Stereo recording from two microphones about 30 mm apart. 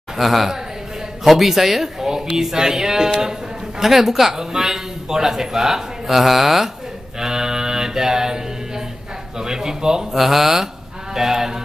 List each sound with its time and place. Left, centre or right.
0.2 s a man's voice: centre
3.8 s a man's voice: centre
7.2 s mantra: centre
9.4 s speech: centre
10.1 s a man's voice: centre